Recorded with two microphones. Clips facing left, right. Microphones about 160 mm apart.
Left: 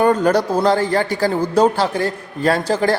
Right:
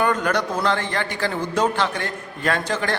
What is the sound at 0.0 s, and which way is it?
Speech, 35° left (ahead or behind).